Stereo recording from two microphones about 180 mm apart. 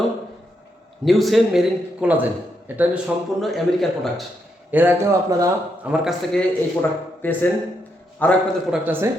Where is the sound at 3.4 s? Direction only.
Centre (ahead or behind).